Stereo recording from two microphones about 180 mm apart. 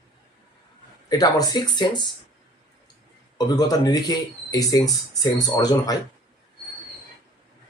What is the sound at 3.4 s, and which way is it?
Speech, 20° left (ahead or behind).